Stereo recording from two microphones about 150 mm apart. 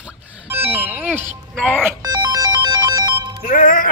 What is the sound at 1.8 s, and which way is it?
Ringtone, 25° right (ahead or behind).